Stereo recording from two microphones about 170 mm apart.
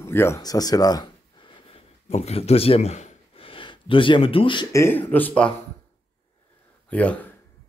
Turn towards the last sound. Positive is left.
turn(degrees=10)  # may be behind; listen again after turning